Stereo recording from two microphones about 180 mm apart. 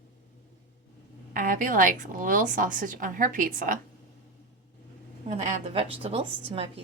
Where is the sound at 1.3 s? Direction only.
50° right (ahead or behind).